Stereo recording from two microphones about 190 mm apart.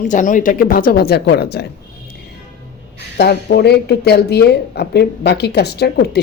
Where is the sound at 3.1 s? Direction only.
60° left (ahead or behind).